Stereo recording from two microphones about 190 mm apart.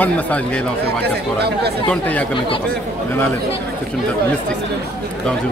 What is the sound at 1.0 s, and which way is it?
Speech, 60° right (ahead or behind).